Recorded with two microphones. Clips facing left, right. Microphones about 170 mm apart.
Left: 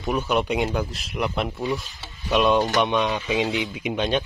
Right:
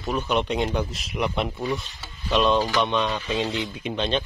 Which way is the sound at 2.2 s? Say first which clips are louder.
Left 1 dB; 10° left (ahead or behind).